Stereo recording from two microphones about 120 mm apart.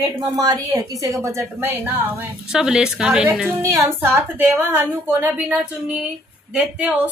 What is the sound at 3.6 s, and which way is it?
Speech, 20° right (ahead or behind).